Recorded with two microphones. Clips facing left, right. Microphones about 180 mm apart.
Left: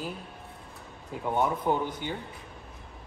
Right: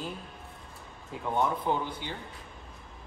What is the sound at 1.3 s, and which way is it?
Speech, 10° left (ahead or behind).